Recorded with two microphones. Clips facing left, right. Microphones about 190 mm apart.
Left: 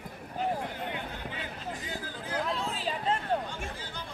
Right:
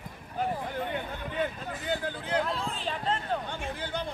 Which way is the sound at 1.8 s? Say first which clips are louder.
Right 6 dB; 65° right (ahead or behind).